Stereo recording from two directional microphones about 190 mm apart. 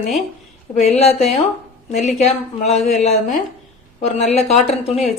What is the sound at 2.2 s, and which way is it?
Speech, 35° left (ahead or behind).